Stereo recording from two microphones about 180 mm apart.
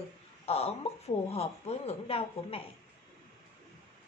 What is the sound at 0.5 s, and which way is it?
Speech, 35° left (ahead or behind).